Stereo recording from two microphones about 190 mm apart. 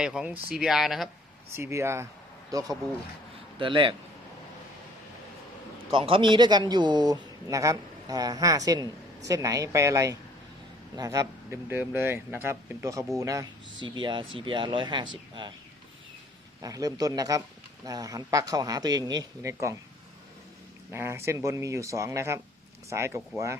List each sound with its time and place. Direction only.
0.0 s speech: 5° right (ahead or behind)
1.5 s speech: 15° right (ahead or behind)
5.9 s speech: 25° right (ahead or behind)
16.6 s speech: 20° right (ahead or behind)
20.9 s speech: 15° right (ahead or behind)